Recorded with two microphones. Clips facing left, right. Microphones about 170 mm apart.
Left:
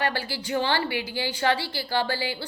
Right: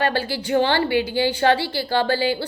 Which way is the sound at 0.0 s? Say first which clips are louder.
Right 6 dB; 25° right (ahead or behind).